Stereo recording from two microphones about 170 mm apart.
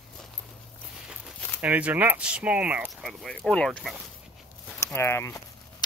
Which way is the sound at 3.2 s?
5° left (ahead or behind).